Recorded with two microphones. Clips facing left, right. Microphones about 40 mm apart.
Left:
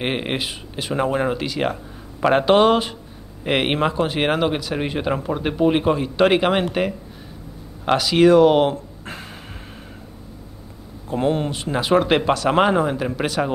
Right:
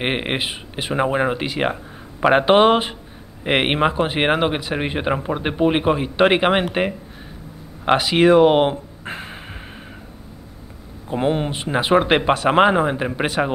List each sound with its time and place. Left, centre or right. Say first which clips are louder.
0.0 s speech: right 1 dB; right
11.1 s speech: even; right